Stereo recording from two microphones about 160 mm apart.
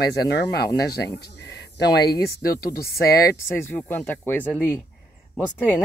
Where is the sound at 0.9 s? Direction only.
90° left.